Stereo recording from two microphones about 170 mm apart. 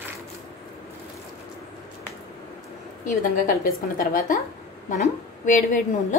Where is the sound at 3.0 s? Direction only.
55° left (ahead or behind).